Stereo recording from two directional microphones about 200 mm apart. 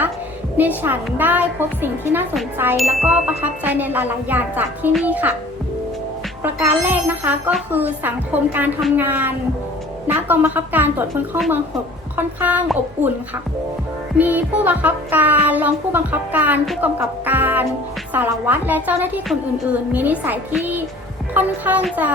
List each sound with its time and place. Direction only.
0.5 s speech: 10° right (ahead or behind)
6.9 s speech: 10° right (ahead or behind)
14.2 s speech: 10° right (ahead or behind)